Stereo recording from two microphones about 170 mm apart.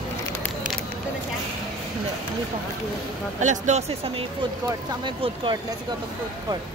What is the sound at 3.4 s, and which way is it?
Speech, 45° right (ahead or behind).